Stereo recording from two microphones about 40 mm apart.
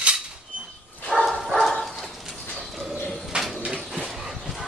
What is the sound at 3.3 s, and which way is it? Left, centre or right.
Bird, right.